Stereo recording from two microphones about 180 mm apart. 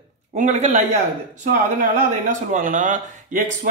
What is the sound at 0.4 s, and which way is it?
Speech, 40° right (ahead or behind).